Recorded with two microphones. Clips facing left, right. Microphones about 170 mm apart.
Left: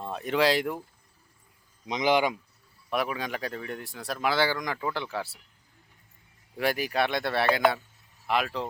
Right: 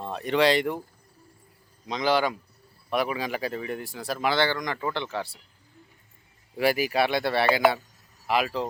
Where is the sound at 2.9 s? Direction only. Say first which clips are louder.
Right 3 dB; centre (ahead or behind).